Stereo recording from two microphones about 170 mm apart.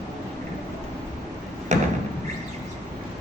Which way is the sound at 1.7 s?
45° right (ahead or behind).